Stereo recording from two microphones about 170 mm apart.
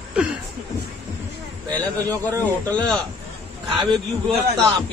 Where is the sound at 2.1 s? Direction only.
20° right (ahead or behind).